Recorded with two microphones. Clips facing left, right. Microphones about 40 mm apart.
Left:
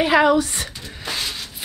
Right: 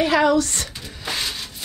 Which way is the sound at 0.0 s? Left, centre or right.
Centre.